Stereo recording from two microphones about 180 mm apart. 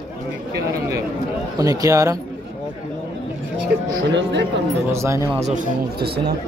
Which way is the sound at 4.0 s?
80° right.